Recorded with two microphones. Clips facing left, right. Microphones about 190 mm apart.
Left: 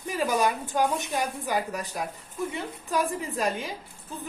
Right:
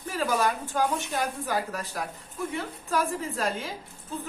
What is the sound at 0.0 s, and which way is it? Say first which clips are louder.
A woman's voice: left 1 dB; 15° left (ahead or behind).